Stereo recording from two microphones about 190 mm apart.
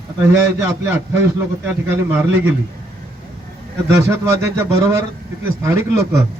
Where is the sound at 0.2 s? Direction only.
10° right (ahead or behind).